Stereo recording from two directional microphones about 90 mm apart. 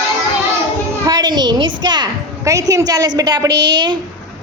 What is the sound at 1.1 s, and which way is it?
A woman's voice, 50° right (ahead or behind).